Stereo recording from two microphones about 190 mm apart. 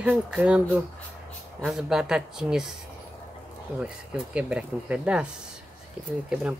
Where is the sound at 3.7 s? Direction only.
5° right (ahead or behind).